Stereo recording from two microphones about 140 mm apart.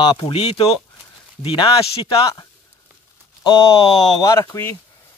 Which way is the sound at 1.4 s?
40° left (ahead or behind).